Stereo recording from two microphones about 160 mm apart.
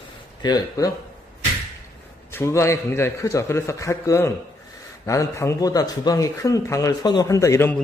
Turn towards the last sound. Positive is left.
turn(degrees=20)  # may be behind; listen again after turning